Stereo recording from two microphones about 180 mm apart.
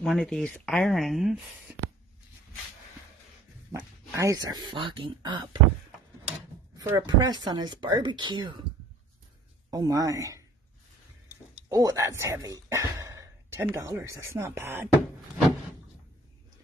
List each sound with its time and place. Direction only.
0.0 s speech: centre (ahead or behind)
3.7 s speech: 15° right (ahead or behind)
6.8 s speech: 20° right (ahead or behind)
9.7 s speech: 20° right (ahead or behind)